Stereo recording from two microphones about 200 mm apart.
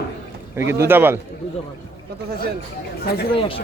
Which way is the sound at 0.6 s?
10° right (ahead or behind).